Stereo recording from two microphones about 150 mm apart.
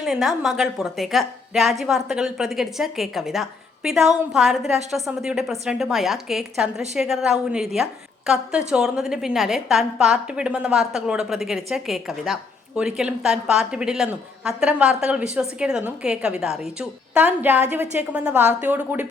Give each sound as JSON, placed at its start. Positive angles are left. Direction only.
{"t": 0.0, "sound": "a woman's voice", "side_deg": 0}